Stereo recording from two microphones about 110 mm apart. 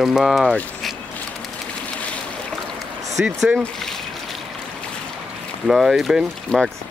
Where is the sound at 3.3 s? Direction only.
10° right (ahead or behind).